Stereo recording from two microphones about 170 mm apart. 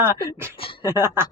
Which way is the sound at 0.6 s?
35° left (ahead or behind).